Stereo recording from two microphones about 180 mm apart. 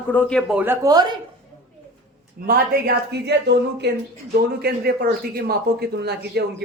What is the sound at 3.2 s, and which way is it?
Speech, 70° right (ahead or behind).